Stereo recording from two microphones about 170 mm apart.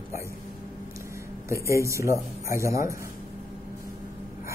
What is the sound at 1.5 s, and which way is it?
Speech, 15° right (ahead or behind).